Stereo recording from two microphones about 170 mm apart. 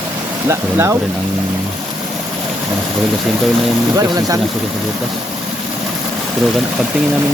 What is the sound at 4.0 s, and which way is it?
Speech, 20° right (ahead or behind).